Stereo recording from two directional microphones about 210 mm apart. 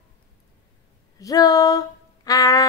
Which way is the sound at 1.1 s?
15° left (ahead or behind).